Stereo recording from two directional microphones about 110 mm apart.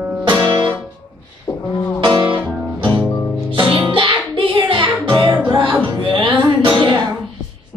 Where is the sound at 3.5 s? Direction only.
45° right (ahead or behind).